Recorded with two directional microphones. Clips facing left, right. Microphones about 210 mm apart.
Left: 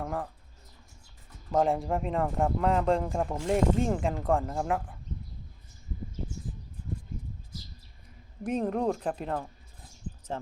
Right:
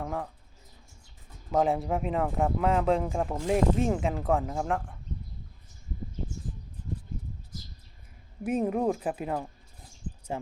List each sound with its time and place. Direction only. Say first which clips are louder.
0.0 s speech: even; centre (ahead or behind)
1.5 s speech: even; centre (ahead or behind)
8.4 s speech: right 1 dB; 5° right (ahead or behind)